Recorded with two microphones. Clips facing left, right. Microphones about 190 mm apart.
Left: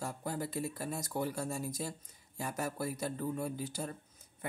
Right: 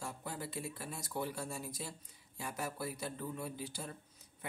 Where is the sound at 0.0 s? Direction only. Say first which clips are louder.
Left 5 dB; 40° left (ahead or behind).